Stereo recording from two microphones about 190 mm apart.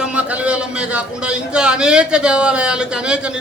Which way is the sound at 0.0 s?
5° right (ahead or behind).